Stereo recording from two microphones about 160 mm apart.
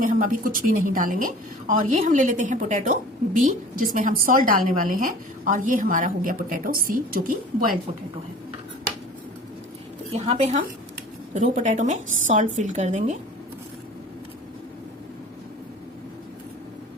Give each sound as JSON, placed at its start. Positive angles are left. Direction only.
{"t": 0.0, "sound": "a woman's voice", "side_deg": -55}
{"t": 10.1, "sound": "a woman's voice", "side_deg": -40}